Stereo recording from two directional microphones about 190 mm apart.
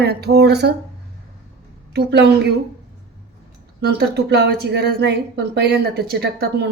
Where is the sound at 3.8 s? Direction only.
55° right (ahead or behind).